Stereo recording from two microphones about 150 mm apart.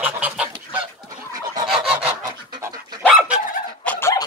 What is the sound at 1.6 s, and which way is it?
Fowl, 5° right (ahead or behind).